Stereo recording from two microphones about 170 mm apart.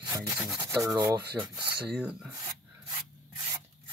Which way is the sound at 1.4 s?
10° right (ahead or behind).